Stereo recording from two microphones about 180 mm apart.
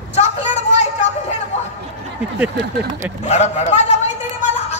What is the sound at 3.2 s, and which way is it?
Speech, 40° left (ahead or behind).